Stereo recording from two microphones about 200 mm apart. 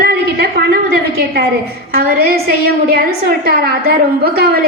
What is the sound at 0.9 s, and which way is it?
A woman's voice, 55° right (ahead or behind).